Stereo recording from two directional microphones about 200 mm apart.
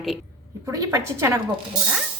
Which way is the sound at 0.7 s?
15° right (ahead or behind).